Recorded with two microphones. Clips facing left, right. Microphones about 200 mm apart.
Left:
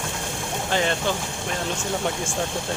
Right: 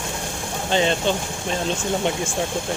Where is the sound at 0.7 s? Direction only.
20° right (ahead or behind).